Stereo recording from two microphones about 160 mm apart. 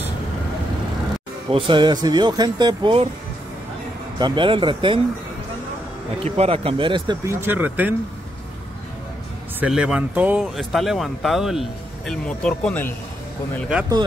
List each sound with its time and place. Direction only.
1.5 s speech: 30° right (ahead or behind)
4.2 s speech: 30° right (ahead or behind)
6.2 s speech: 40° right (ahead or behind)
7.2 s speech: 15° right (ahead or behind)
9.6 s speech: 5° right (ahead or behind)